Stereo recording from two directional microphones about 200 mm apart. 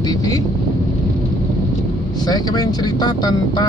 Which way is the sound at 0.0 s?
20° left (ahead or behind).